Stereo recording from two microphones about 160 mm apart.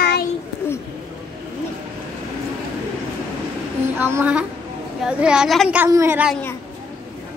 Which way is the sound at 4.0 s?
15° right (ahead or behind).